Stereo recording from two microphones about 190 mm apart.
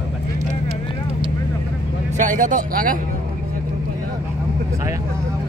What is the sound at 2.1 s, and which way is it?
Speech, 40° right (ahead or behind).